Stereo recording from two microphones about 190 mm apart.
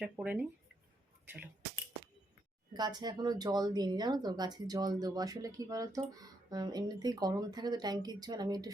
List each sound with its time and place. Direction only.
0.0 s speech: 5° right (ahead or behind)
2.7 s speech: 20° right (ahead or behind)